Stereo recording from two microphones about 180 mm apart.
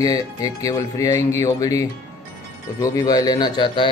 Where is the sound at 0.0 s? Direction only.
20° left (ahead or behind).